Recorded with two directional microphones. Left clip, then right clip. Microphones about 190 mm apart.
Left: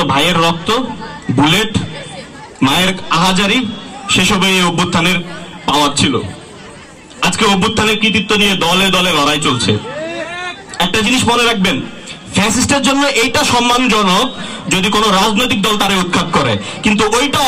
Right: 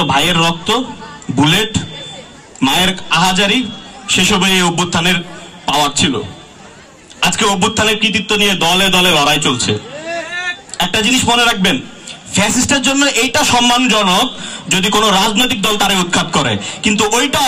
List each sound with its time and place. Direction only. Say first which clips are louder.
0.1 s a man's voice: left 1 dB; 45° right (ahead or behind)
7.2 s a man's voice: left 1 dB; 45° right (ahead or behind)
10.8 s a man's voice: left 1 dB; 45° right (ahead or behind)